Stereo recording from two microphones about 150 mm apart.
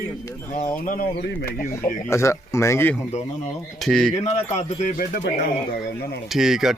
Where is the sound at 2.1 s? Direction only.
20° left (ahead or behind).